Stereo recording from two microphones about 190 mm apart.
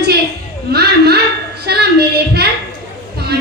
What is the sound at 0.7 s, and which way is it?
Speech, 55° right (ahead or behind).